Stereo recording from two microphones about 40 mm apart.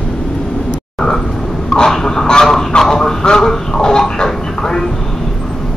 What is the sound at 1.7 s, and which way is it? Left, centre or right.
Speech, centre.